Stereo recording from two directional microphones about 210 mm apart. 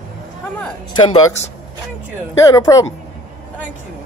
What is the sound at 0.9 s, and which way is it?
Speech, 20° left (ahead or behind).